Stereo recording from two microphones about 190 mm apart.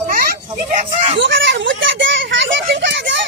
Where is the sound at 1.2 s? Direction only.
75° right (ahead or behind).